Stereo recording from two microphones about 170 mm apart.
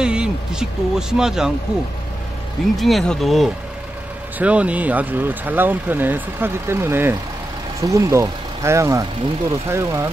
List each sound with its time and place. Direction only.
0.0 s speech: 5° right (ahead or behind)
2.7 s speech: centre (ahead or behind); by 10.0 s 15° right (ahead or behind)